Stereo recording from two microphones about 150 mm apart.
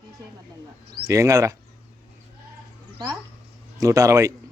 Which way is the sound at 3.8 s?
20° right (ahead or behind).